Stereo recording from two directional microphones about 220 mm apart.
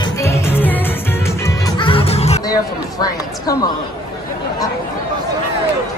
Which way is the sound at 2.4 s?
15° left (ahead or behind).